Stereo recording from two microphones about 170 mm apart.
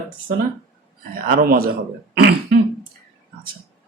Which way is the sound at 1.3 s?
60° right (ahead or behind).